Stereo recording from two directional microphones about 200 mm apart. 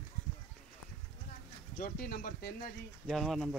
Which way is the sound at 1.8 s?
45° left (ahead or behind).